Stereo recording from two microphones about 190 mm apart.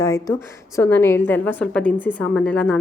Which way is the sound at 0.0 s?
15° left (ahead or behind).